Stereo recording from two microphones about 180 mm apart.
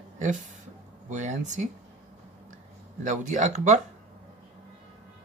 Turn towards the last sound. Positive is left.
turn(degrees=-40)  # may be behind; listen again after turning